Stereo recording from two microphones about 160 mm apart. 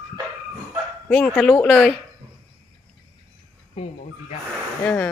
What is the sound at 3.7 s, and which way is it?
Speech, 45° left (ahead or behind).